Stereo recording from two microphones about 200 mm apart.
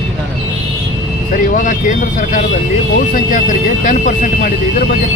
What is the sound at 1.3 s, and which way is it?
Speech, 40° left (ahead or behind).